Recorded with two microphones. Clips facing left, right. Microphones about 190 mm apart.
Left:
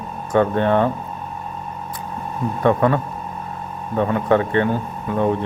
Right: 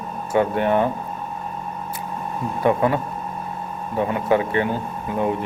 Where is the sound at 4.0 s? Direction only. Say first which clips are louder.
Left 2 dB; 20° right (ahead or behind).